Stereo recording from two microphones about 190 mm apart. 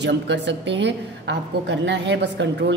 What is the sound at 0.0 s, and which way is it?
A woman's voice, 65° right (ahead or behind).